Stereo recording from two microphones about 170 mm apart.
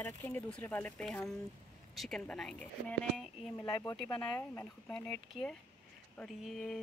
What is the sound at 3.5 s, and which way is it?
Speech, 15° left (ahead or behind).